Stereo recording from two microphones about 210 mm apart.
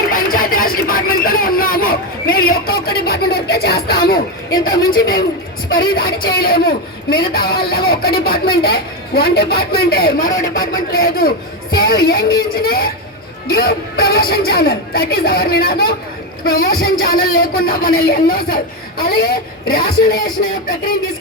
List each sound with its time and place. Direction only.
0.1 s a sound: 45° left (ahead or behind)
4.4 s speech: 20° left (ahead or behind)
4.9 s speech: 45° left (ahead or behind)